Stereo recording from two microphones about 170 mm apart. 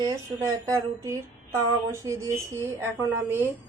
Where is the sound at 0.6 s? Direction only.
20° right (ahead or behind).